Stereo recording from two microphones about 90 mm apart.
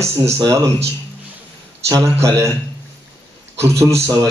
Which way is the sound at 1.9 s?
35° right (ahead or behind).